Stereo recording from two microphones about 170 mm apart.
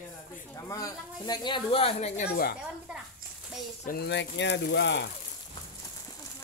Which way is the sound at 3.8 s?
80° left.